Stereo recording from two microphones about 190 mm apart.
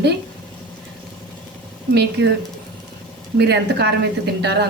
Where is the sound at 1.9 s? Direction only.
60° right (ahead or behind).